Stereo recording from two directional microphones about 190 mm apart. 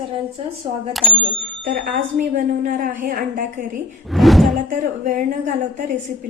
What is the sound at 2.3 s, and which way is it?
Speech, 40° right (ahead or behind).